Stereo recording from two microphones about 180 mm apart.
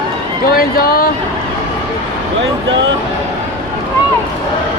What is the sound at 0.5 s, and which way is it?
Speech, 55° left (ahead or behind).